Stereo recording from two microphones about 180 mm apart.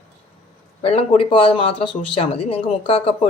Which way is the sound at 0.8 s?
30° left (ahead or behind).